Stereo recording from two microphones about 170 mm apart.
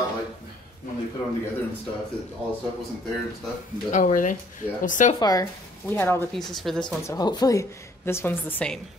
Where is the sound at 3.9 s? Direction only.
45° left (ahead or behind).